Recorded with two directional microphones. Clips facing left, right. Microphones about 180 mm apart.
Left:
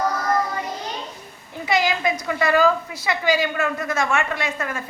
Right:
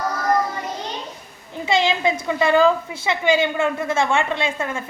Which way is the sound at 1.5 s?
25° right (ahead or behind).